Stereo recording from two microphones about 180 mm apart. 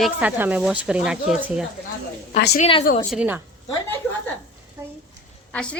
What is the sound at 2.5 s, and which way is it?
Speech, 35° left (ahead or behind).